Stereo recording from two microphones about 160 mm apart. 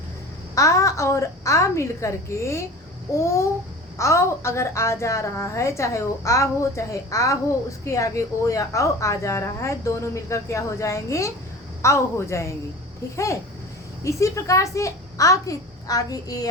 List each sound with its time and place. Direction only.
0.5 s a woman's voice: 20° left (ahead or behind)
14.0 s a woman's voice: 20° left (ahead or behind)